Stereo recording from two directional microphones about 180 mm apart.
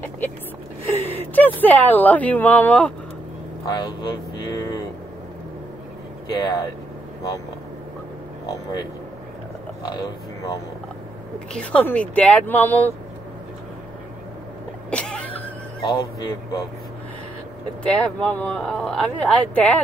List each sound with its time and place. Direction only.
1.0 s a sound: 10° left (ahead or behind)
1.6 s speech: 10° left (ahead or behind)
3.6 s speech: 20° left (ahead or behind)
6.3 s speech: 20° left (ahead or behind)
9.8 s speech: 20° left (ahead or behind)
11.5 s speech: 5° left (ahead or behind)
14.9 s cough: 5° left (ahead or behind)
15.9 s speech: 20° left (ahead or behind)
17.8 s speech: 5° left (ahead or behind)